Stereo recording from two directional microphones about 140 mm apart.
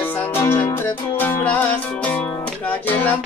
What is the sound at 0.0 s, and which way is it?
Music, 15° left (ahead or behind).